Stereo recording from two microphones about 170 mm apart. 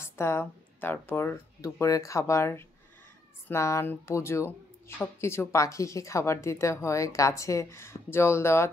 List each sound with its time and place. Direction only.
0.0 s speech: 15° left (ahead or behind)